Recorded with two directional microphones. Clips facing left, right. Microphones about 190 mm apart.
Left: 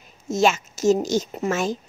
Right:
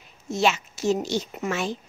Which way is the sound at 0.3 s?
45° left (ahead or behind).